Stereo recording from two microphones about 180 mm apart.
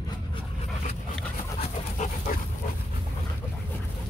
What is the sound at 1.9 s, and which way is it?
Dog, 50° left (ahead or behind).